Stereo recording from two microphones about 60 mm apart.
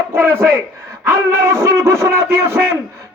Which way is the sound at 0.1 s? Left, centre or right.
Right.